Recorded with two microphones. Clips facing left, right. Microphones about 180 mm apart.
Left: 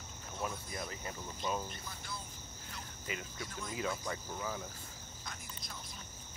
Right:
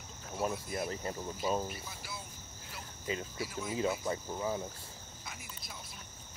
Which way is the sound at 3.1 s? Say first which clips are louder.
Right 6 dB; 30° right (ahead or behind).